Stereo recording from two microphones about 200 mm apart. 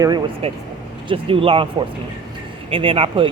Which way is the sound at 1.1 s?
25° right (ahead or behind).